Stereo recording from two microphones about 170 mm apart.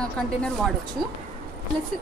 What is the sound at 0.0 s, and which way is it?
Speech, 5° left (ahead or behind).